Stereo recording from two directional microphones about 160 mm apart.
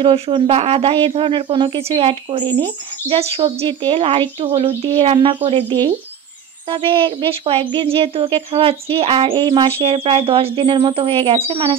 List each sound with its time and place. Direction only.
0.0 s speech: 35° right (ahead or behind)